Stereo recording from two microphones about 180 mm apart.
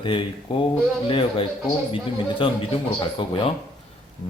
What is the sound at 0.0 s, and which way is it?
Speech, 30° left (ahead or behind).